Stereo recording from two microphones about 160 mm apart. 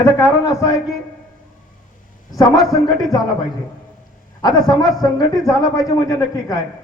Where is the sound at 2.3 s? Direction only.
20° left (ahead or behind).